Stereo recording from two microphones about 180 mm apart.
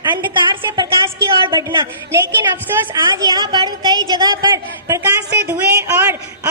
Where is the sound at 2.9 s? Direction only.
20° right (ahead or behind).